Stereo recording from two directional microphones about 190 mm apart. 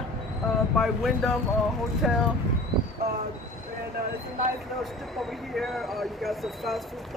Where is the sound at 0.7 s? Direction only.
Centre (ahead or behind).